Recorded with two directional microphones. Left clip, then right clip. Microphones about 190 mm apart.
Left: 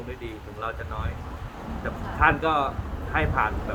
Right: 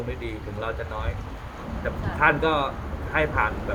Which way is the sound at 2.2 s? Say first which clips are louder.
Even; 15° left (ahead or behind).